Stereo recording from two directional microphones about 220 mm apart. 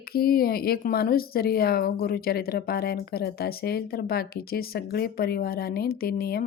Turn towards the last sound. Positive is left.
turn(degrees=45)  # may be behind; listen again after turning